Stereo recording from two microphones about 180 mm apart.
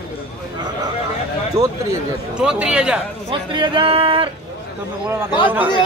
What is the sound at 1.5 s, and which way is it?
Speech, 15° right (ahead or behind).